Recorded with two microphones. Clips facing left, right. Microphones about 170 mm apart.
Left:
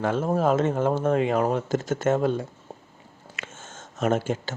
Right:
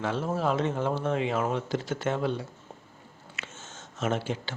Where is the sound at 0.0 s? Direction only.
50° left (ahead or behind).